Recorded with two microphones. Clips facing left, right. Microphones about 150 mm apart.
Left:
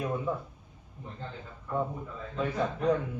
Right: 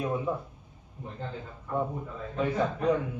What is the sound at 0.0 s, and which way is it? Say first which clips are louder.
Speech: right 2 dB; centre (ahead or behind).